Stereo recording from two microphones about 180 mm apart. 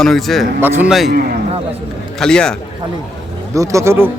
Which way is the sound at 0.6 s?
10° right (ahead or behind).